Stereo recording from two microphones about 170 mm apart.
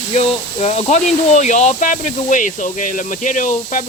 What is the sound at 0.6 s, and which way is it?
Speech, 40° left (ahead or behind).